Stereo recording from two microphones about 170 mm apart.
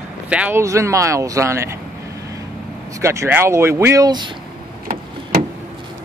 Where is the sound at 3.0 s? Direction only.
15° right (ahead or behind).